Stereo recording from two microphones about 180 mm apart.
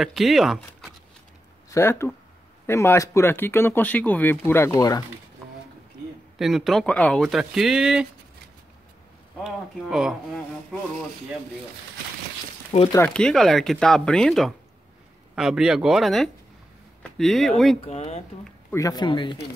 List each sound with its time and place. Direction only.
0.0 s speech: centre (ahead or behind)
1.7 s speech: 15° left (ahead or behind)
6.3 s speech: centre (ahead or behind)
9.4 s speech: centre (ahead or behind)
12.9 s speech: 10° left (ahead or behind)
17.7 s speech: 35° left (ahead or behind)
18.7 s speech: 20° left (ahead or behind)